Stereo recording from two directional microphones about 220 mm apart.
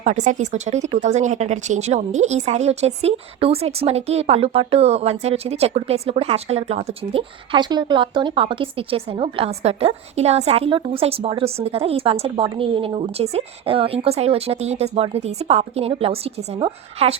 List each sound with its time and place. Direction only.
0.0 s speech: 35° right (ahead or behind)